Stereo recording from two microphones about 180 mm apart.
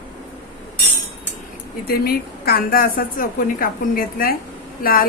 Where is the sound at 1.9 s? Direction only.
55° left (ahead or behind).